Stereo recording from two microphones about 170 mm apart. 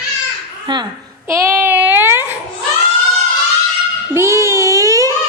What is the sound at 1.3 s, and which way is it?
Speech, 15° right (ahead or behind).